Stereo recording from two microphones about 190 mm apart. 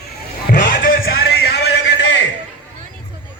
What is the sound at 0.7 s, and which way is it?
Music, 50° left (ahead or behind).